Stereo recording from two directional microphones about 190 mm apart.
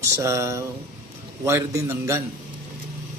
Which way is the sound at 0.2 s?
15° right (ahead or behind).